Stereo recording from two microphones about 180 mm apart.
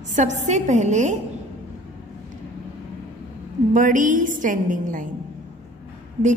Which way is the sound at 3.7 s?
45° right (ahead or behind).